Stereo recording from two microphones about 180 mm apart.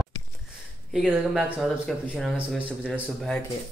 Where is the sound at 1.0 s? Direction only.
5° right (ahead or behind).